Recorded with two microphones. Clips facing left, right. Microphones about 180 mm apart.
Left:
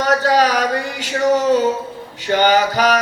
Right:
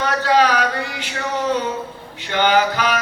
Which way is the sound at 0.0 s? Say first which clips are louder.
Left 2 dB; 40° left (ahead or behind).